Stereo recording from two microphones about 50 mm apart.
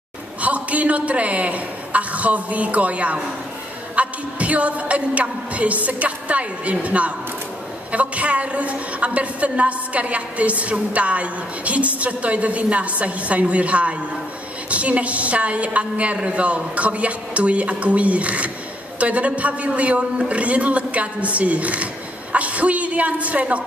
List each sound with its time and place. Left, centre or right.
0.4 s a man's voice: right